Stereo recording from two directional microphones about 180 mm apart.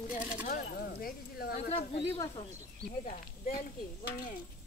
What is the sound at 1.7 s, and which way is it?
Speech, 35° left (ahead or behind).